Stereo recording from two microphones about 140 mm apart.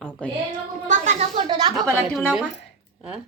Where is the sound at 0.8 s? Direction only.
55° right (ahead or behind).